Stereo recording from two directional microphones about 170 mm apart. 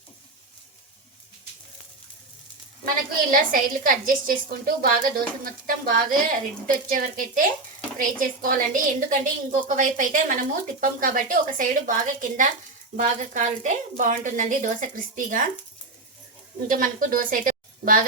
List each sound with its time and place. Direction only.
3.3 s a woman's voice: 55° right (ahead or behind)
16.6 s a woman's voice: 50° right (ahead or behind)